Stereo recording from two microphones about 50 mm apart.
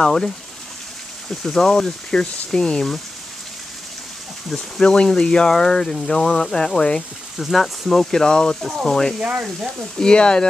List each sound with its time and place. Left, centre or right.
0.0 s speech: centre
1.4 s speech: centre
4.5 s speech: centre
7.3 s speech: centre